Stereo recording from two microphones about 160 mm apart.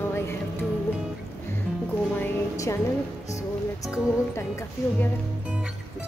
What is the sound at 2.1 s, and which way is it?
Speech, 15° left (ahead or behind).